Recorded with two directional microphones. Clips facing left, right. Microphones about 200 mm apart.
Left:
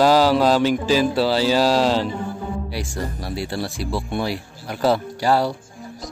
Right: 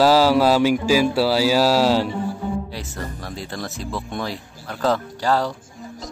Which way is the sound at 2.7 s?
10° left (ahead or behind).